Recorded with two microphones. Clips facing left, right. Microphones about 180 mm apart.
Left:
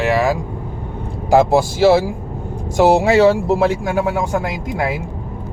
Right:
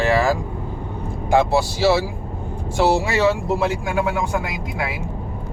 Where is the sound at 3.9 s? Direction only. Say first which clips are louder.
Left 3 dB; 40° left (ahead or behind).